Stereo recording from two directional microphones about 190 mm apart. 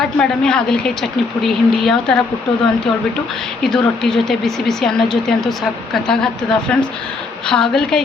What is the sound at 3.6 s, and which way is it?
A woman's voice, 5° left (ahead or behind).